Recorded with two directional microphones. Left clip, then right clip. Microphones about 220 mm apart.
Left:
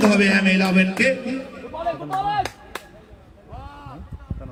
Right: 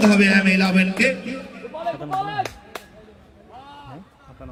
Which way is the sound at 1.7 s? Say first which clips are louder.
Left 1 dB; 45° left (ahead or behind).